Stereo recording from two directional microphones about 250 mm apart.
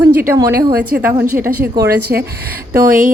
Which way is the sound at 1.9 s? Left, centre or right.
Right.